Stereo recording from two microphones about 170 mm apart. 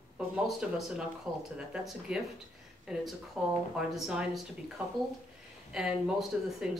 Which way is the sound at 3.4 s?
5° right (ahead or behind).